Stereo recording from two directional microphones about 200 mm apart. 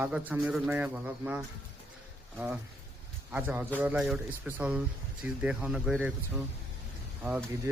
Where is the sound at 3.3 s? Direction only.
10° right (ahead or behind).